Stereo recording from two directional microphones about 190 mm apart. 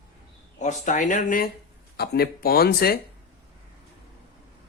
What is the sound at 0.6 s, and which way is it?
Speech, 40° left (ahead or behind).